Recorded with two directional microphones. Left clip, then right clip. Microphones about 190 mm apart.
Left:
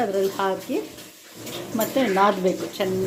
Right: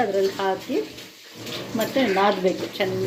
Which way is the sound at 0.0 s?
5° left (ahead or behind).